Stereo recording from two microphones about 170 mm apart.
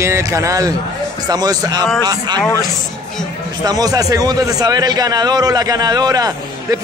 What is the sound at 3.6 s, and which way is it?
Speech, 20° right (ahead or behind).